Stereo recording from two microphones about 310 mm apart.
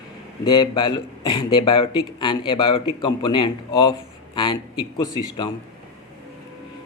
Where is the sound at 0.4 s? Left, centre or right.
Centre.